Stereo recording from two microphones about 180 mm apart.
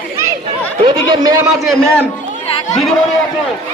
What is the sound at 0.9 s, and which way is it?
Speech, 20° right (ahead or behind).